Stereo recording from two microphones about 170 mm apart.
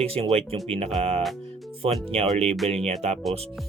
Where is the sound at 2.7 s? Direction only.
40° right (ahead or behind).